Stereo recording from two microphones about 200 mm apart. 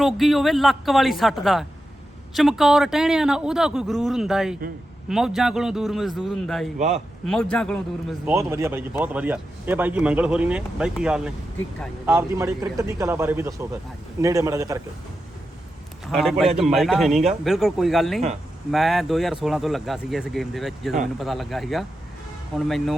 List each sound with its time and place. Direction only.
0.0 s speech: centre (ahead or behind)
6.7 s speech: 35° right (ahead or behind)
7.3 s speech: 5° left (ahead or behind)
8.3 s a man's voice: 15° right (ahead or behind)
16.0 s a man's voice: centre (ahead or behind)